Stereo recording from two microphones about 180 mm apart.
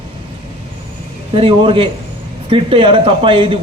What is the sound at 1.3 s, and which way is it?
A man's voice, 30° right (ahead or behind).